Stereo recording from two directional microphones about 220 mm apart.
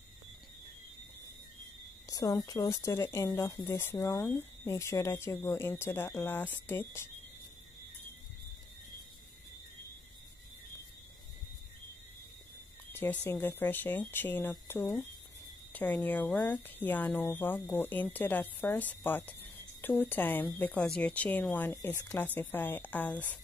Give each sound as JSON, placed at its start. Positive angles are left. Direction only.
{"t": 2.0, "sound": "speech", "side_deg": 15}
{"t": 12.9, "sound": "speech", "side_deg": 10}